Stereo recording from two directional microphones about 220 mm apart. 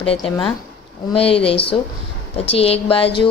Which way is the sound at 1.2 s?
25° left (ahead or behind).